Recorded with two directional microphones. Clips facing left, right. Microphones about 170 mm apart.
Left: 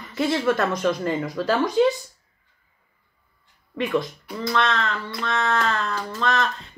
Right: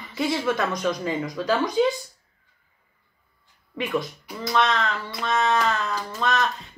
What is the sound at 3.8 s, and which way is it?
Speech, centre (ahead or behind).